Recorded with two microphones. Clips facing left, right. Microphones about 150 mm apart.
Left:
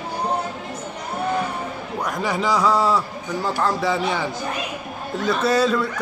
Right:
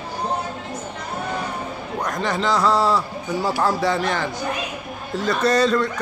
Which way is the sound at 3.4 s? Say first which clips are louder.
Right 1 dB; 5° right (ahead or behind).